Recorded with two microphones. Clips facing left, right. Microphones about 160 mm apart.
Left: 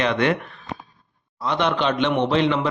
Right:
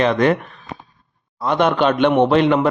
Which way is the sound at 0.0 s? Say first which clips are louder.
Right 5 dB; 40° right (ahead or behind).